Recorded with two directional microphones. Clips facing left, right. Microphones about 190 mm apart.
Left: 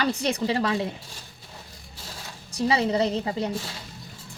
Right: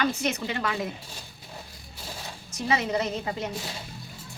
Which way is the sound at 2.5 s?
35° left (ahead or behind).